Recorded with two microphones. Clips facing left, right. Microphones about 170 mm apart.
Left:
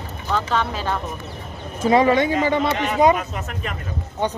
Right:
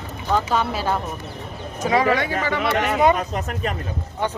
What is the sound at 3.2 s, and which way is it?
Speech, 35° right (ahead or behind).